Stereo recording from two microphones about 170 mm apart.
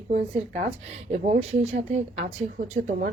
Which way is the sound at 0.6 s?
40° right (ahead or behind).